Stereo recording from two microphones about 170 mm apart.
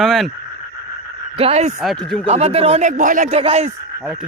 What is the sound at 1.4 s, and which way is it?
Speech, 35° right (ahead or behind).